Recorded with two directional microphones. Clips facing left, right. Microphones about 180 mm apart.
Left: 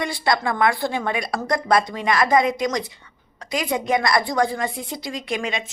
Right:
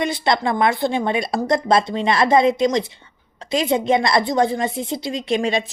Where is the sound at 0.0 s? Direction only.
25° right (ahead or behind).